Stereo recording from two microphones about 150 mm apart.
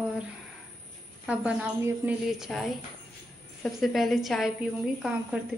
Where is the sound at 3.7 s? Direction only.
Centre (ahead or behind).